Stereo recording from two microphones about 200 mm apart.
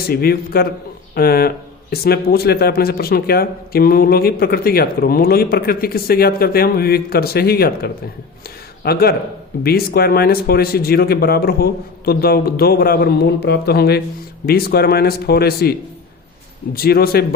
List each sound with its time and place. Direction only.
0.1 s speech: 50° left (ahead or behind)
8.4 s a sound: 50° left (ahead or behind)
9.6 s speech: 50° left (ahead or behind)
16.7 s speech: 50° left (ahead or behind)